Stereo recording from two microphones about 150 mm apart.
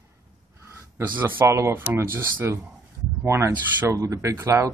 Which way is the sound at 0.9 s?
10° right (ahead or behind).